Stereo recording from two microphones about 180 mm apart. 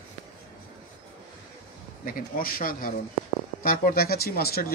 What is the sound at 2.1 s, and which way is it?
Speech, 50° left (ahead or behind).